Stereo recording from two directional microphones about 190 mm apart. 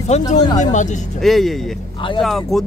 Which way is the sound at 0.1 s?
35° left (ahead or behind).